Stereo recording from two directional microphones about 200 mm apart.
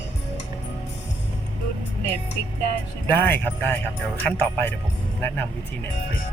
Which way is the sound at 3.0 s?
10° left (ahead or behind).